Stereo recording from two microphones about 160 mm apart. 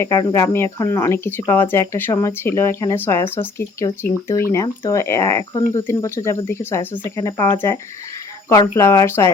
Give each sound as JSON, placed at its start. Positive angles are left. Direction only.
{"t": 0.2, "sound": "speech", "side_deg": 20}
{"t": 8.4, "sound": "speech", "side_deg": 20}